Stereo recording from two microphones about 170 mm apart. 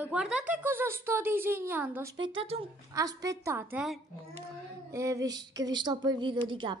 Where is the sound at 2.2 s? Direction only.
30° right (ahead or behind).